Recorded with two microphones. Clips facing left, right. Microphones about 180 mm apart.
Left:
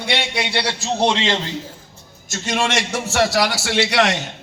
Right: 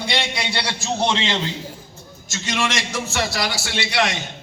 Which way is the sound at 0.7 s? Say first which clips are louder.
Left 2 dB; 35° left (ahead or behind).